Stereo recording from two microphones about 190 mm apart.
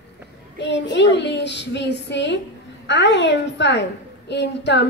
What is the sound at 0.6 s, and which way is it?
A child's voice, 65° left (ahead or behind).